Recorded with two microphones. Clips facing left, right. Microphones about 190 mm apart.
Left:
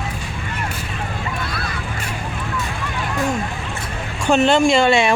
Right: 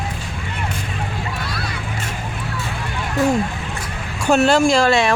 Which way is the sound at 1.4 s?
50° left (ahead or behind).